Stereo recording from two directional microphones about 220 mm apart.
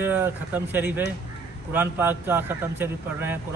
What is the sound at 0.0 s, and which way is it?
A man's voice, 10° right (ahead or behind).